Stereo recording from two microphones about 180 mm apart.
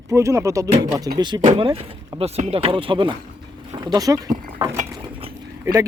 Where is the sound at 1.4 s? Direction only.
35° right (ahead or behind).